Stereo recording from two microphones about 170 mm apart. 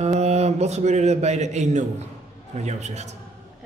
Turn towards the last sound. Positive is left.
turn(degrees=-40)  # may be behind; listen again after turning